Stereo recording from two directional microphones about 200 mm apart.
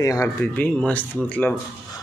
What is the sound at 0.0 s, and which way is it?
Speech, 15° left (ahead or behind).